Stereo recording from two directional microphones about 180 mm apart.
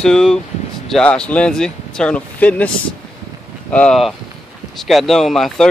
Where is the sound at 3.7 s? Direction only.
5° left (ahead or behind).